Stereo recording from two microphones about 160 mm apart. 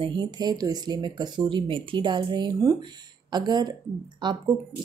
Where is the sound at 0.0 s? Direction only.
25° right (ahead or behind).